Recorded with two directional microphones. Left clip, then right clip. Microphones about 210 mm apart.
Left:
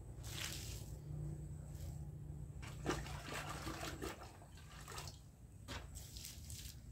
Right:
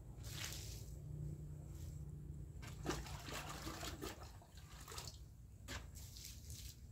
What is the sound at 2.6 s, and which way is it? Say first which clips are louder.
Toilet flush: left 3 dB; 20° right (ahead or behind).